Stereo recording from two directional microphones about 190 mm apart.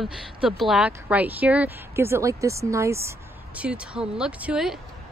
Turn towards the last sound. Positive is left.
turn(degrees=-5)  # may be behind; listen again after turning